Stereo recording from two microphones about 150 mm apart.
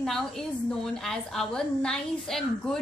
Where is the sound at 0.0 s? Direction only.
5° left (ahead or behind).